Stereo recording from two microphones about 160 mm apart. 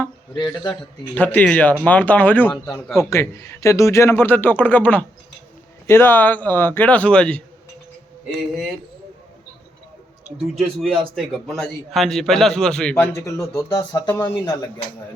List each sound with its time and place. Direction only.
0.3 s speech: 25° left (ahead or behind)
1.1 s a man's voice: 10° left (ahead or behind)
3.1 s a man's voice: 15° left (ahead or behind)
10.6 s a man's voice: centre (ahead or behind)
13.1 s speech: 20° left (ahead or behind)